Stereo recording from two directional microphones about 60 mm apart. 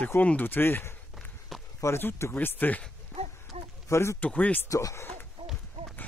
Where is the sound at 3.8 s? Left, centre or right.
Left.